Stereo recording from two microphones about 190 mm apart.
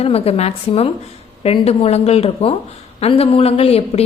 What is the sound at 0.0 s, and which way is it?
A woman's voice, 30° left (ahead or behind).